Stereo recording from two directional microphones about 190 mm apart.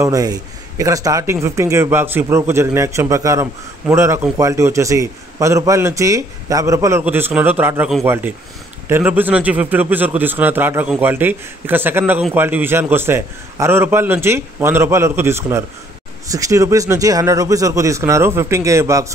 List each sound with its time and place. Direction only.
0.0 s a man's voice: 20° right (ahead or behind)